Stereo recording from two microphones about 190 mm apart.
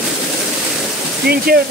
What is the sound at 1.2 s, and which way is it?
Speech, 55° right (ahead or behind).